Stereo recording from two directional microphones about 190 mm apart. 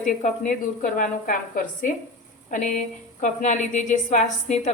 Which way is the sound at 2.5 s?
40° left (ahead or behind).